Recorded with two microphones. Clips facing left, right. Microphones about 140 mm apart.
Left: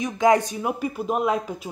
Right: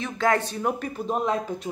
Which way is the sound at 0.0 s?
15° left (ahead or behind).